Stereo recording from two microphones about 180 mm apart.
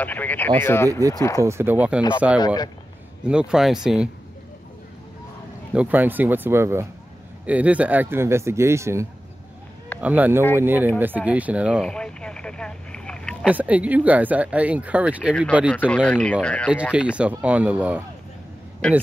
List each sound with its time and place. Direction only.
0.0 s speech: 10° left (ahead or behind)
0.8 s speech: 20° right (ahead or behind)
2.3 s speech: 20° left (ahead or behind)
3.3 s speech: 5° right (ahead or behind)
5.7 s speech: 10° right (ahead or behind)
13.5 s speech: 10° right (ahead or behind)
15.9 s speech: 5° left (ahead or behind)
16.9 s speech: 5° right (ahead or behind)
18.8 s speech: 5° left (ahead or behind)